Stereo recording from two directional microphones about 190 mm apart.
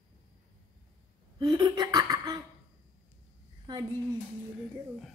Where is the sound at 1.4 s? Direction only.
20° right (ahead or behind).